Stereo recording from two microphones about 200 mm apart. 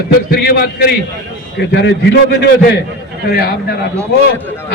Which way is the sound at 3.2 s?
50° left (ahead or behind).